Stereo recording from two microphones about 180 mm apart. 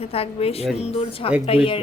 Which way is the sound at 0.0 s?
35° left (ahead or behind).